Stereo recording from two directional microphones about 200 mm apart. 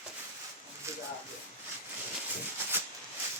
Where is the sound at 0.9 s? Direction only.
15° right (ahead or behind).